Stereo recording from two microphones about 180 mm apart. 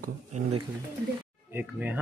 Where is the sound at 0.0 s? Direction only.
40° right (ahead or behind).